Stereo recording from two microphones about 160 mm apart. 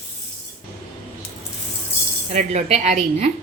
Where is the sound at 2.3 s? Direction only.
45° right (ahead or behind).